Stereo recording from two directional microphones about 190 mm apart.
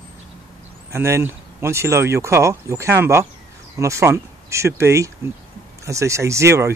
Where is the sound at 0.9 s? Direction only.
15° right (ahead or behind).